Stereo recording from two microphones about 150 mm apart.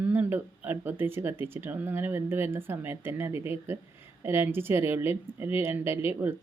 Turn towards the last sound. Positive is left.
turn(degrees=-15)  # may be behind; listen again after turning